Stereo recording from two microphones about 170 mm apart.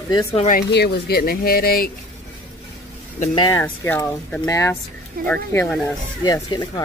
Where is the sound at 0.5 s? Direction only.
70° left (ahead or behind).